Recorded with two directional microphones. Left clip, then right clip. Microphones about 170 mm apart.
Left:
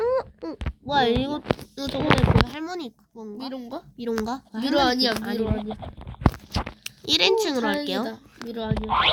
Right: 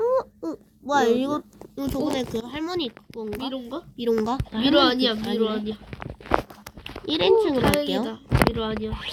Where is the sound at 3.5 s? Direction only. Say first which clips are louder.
Right 2 dB; 65° left (ahead or behind).